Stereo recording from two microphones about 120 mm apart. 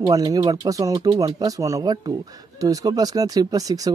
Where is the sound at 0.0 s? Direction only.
30° right (ahead or behind).